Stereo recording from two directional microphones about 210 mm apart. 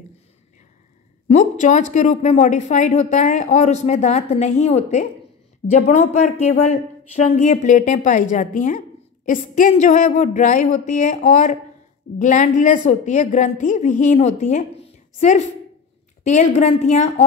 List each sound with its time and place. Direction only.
1.3 s a woman's voice: 35° left (ahead or behind)